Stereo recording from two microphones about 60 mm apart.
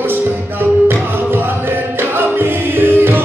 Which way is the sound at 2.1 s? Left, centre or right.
Right.